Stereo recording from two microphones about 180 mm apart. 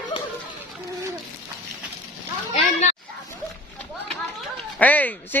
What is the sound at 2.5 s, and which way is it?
Children playing, 40° left (ahead or behind).